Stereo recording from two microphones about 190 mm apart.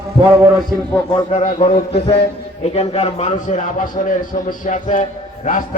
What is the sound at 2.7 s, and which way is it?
A man's voice, 35° left (ahead or behind).